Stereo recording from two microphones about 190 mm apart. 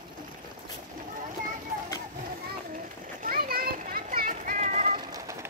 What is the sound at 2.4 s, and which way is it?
Children playing, 45° right (ahead or behind).